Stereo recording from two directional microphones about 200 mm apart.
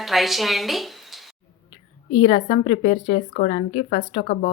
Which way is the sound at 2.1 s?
30° left (ahead or behind).